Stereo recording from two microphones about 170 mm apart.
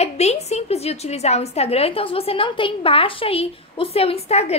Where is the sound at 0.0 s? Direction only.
40° left (ahead or behind).